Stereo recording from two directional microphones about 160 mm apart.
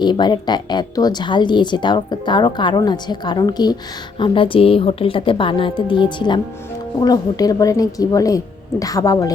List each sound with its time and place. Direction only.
0.0 s a woman's voice: 25° left (ahead or behind)